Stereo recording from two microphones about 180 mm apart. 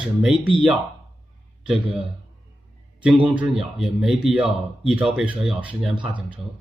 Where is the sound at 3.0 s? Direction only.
5° right (ahead or behind).